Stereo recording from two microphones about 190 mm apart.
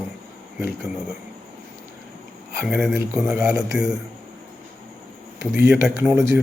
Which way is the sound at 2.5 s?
10° right (ahead or behind).